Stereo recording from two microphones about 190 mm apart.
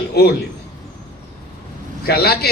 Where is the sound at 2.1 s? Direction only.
55° left (ahead or behind).